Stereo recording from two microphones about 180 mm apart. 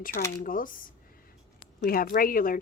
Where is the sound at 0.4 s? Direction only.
50° left (ahead or behind).